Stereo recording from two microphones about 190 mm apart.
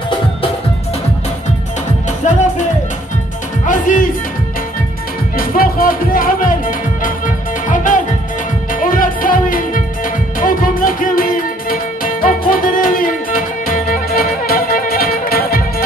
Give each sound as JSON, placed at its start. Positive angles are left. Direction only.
{"t": 2.2, "sound": "music", "side_deg": 40}
{"t": 3.6, "sound": "music", "side_deg": 45}
{"t": 5.4, "sound": "music", "side_deg": 50}